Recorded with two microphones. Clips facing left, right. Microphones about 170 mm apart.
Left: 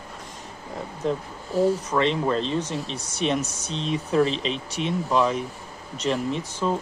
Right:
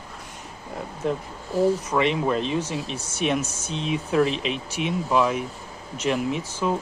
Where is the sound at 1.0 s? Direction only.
5° right (ahead or behind).